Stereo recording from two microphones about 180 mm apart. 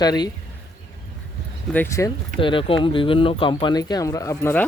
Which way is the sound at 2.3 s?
30° left (ahead or behind).